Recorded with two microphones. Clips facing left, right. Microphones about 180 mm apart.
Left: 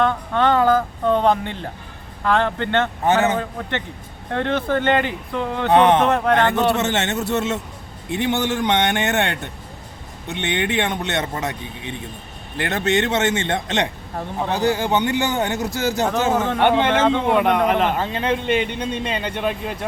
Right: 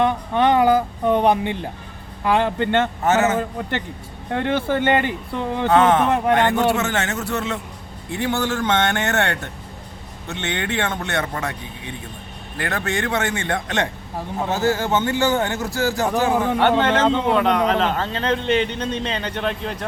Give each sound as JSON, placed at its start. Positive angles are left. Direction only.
{"t": 0.0, "sound": "speech", "side_deg": -15}
{"t": 5.6, "sound": "a man's voice", "side_deg": 20}
{"t": 6.1, "sound": "speech", "side_deg": -15}
{"t": 6.5, "sound": "a man's voice", "side_deg": 20}